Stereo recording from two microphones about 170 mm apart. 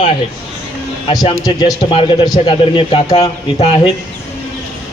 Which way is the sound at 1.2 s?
20° left (ahead or behind).